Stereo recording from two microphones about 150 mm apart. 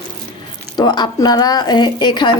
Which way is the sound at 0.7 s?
30° left (ahead or behind).